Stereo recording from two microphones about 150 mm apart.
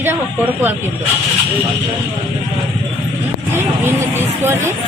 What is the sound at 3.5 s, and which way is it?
Speech, 15° right (ahead or behind).